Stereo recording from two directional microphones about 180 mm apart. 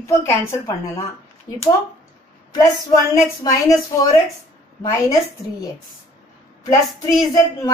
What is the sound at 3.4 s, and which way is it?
Speech, 20° left (ahead or behind).